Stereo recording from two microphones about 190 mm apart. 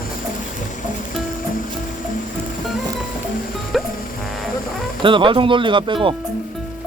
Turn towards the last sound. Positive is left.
turn(degrees=-25)  # may be behind; listen again after turning